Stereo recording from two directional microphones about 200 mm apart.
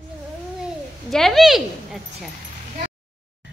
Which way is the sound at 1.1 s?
Centre (ahead or behind).